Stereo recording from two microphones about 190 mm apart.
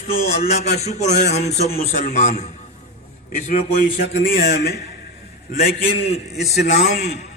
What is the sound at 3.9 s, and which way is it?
Speech, 50° left (ahead or behind).